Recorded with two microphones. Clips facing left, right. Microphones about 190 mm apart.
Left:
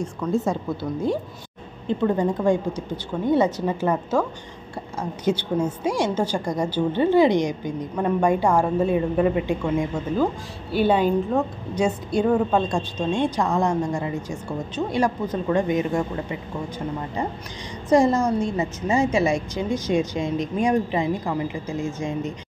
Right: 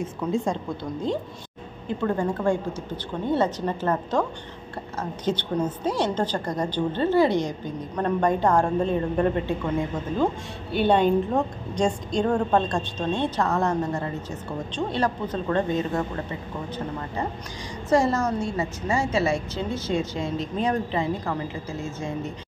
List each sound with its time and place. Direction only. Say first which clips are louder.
0.0 s a woman's voice: left 2 dB; 5° right (ahead or behind)
2.0 s a woman's voice: left 3 dB; 15° left (ahead or behind)
5.2 s a woman's voice: left 3 dB; 10° left (ahead or behind)
17.8 s a woman's voice: left 4 dB; 15° left (ahead or behind)